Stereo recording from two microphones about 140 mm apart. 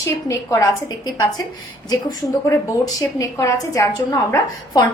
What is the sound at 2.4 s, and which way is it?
A woman's voice, 25° left (ahead or behind).